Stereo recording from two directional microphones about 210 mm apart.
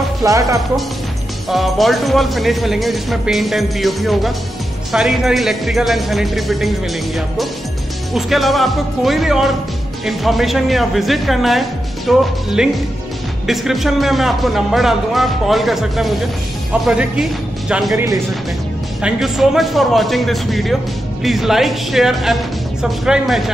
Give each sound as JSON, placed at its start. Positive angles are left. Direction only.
{"t": 0.2, "sound": "speech", "side_deg": -15}
{"t": 1.5, "sound": "speech", "side_deg": 0}
{"t": 8.1, "sound": "speech", "side_deg": 0}